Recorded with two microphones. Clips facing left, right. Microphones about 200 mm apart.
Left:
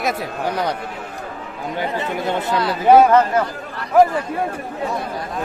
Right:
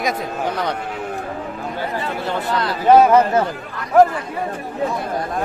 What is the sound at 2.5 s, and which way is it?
Speech, 10° left (ahead or behind).